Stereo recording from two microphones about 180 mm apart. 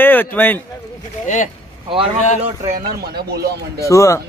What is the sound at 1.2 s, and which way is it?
Speech, 45° left (ahead or behind).